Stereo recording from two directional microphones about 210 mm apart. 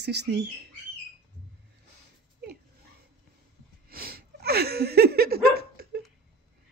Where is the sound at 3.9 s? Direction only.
45° right (ahead or behind).